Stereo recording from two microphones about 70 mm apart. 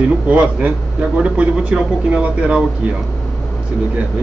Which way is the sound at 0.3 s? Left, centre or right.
Right.